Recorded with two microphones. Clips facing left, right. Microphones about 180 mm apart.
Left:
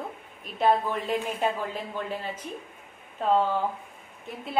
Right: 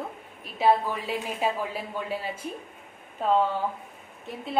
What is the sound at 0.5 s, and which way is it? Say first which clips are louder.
A woman's voice: right 1 dB; 5° right (ahead or behind).